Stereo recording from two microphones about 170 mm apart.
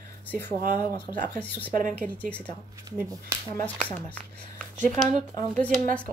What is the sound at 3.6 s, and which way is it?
Speech, 10° left (ahead or behind).